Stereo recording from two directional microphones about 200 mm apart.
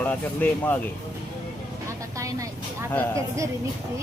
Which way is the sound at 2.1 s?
15° right (ahead or behind).